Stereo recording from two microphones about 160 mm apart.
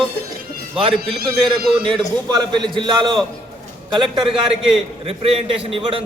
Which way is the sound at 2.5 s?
30° right (ahead or behind).